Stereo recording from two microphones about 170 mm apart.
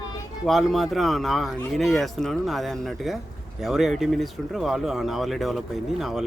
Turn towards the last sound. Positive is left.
turn(degrees=0)  # may be behind; listen again after turning